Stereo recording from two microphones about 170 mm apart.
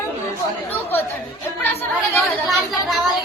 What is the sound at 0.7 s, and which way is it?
Chatter, 10° left (ahead or behind).